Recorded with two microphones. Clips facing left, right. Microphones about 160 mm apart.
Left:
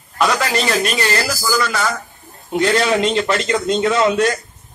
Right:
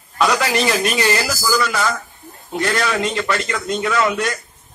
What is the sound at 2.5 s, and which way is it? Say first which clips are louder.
A man's voice: left 4 dB; 20° left (ahead or behind).